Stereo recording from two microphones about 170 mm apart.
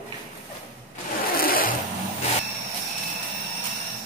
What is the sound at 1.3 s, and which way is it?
Zipper, 60° left (ahead or behind).